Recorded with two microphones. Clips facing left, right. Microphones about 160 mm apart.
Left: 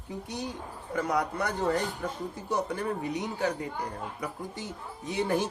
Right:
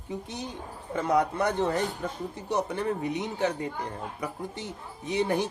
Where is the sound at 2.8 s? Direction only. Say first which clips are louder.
Right 2 dB; 20° right (ahead or behind).